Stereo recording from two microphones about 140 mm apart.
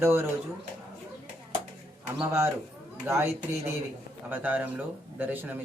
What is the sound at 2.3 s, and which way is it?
Speech, 20° right (ahead or behind).